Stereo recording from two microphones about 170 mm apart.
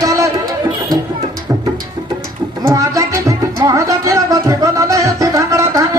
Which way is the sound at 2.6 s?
20° right (ahead or behind).